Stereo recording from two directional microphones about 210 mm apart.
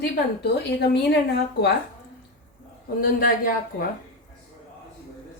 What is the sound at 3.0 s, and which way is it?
Speech, 45° left (ahead or behind).